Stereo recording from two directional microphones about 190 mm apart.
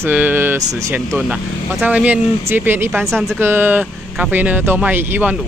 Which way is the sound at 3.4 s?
10° right (ahead or behind).